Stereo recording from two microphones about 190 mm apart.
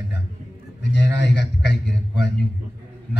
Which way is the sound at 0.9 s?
65° left (ahead or behind).